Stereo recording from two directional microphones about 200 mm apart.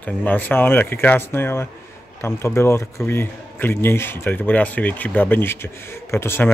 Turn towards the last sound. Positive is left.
turn(degrees=10)  # may be behind; listen again after turning